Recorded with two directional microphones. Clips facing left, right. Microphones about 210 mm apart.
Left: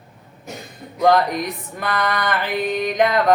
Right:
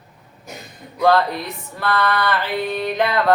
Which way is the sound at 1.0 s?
15° left (ahead or behind).